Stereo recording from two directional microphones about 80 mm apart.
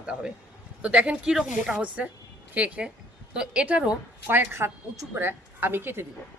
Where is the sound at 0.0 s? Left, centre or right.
Centre.